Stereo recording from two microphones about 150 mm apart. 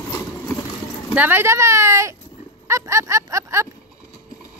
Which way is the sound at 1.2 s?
15° right (ahead or behind).